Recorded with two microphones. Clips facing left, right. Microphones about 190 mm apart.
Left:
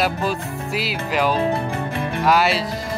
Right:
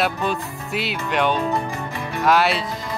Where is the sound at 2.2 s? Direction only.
Centre (ahead or behind).